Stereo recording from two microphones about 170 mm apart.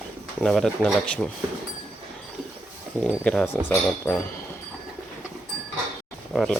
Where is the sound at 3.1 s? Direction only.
5° left (ahead or behind).